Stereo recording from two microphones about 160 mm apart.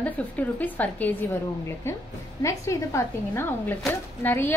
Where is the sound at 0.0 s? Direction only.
10° left (ahead or behind).